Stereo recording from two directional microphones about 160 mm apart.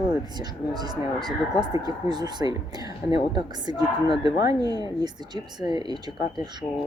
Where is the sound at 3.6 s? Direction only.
25° right (ahead or behind).